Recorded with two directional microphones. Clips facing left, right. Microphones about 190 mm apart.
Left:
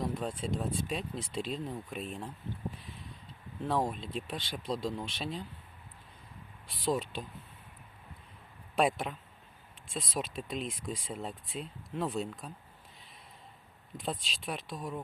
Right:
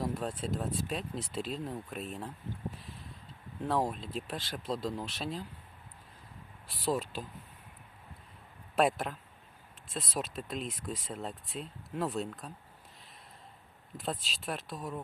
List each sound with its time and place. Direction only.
0.0 s speech: 5° right (ahead or behind)
3.7 s speech: 5° right (ahead or behind)
6.7 s speech: 5° right (ahead or behind)
8.7 s speech: 5° right (ahead or behind)
13.9 s speech: centre (ahead or behind)